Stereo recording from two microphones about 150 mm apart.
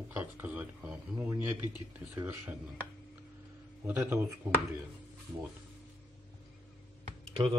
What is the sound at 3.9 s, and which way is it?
Speech, 15° right (ahead or behind).